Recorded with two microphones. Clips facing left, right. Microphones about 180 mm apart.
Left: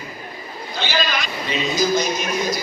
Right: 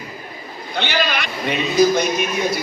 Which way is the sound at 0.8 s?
60° right (ahead or behind).